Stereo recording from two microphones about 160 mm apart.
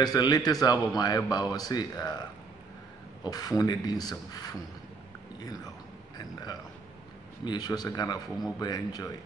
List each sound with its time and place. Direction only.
0.0 s a man's voice: 25° left (ahead or behind)
3.3 s a man's voice: 25° left (ahead or behind)
6.1 s burping: 25° left (ahead or behind)
7.4 s a man's voice: 25° left (ahead or behind)